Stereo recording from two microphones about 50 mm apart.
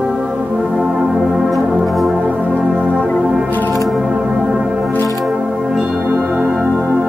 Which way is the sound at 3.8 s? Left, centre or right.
Centre.